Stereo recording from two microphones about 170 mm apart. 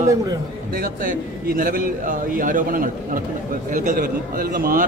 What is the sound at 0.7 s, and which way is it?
A man's voice, 60° right (ahead or behind).